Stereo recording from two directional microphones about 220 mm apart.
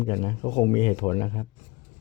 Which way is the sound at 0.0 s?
20° left (ahead or behind).